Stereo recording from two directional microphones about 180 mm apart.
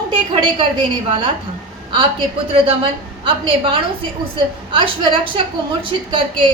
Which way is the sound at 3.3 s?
30° right (ahead or behind).